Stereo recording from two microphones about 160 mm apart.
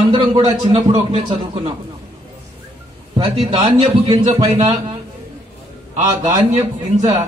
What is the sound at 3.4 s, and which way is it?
A man's voice, 30° right (ahead or behind).